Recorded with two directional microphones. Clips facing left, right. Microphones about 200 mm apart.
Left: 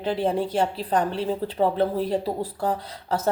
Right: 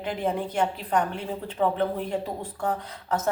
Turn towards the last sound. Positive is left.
turn(degrees=35)  # may be behind; listen again after turning